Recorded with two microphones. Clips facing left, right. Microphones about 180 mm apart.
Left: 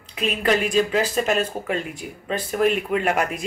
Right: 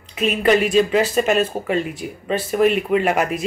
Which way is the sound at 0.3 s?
5° right (ahead or behind).